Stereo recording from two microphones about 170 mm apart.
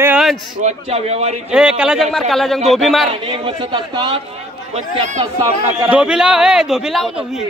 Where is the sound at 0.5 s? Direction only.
40° right (ahead or behind).